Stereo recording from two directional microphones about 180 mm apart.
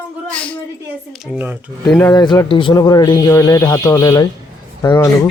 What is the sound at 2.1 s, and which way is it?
A man's voice, 25° left (ahead or behind).